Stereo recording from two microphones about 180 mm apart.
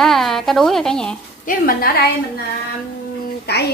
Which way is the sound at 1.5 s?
55° left (ahead or behind).